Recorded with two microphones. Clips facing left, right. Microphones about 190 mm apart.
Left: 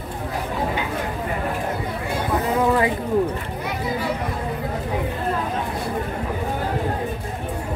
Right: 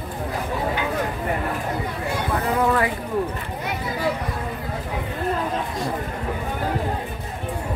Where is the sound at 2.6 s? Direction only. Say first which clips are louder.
Left 2 dB; 20° left (ahead or behind).